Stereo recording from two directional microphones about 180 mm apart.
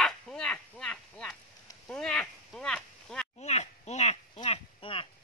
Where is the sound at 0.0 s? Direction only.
5° left (ahead or behind).